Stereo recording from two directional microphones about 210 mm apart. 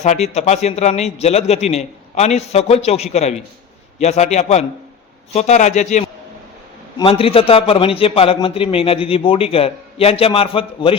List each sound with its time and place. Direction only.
0.0 s a man's voice: 30° left (ahead or behind)